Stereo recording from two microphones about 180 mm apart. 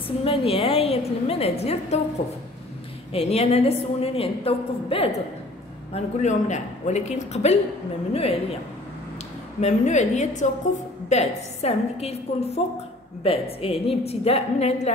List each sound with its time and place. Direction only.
0.2 s a woman's voice: 30° left (ahead or behind)
3.1 s a woman's voice: 35° left (ahead or behind)
9.6 s a woman's voice: 40° left (ahead or behind)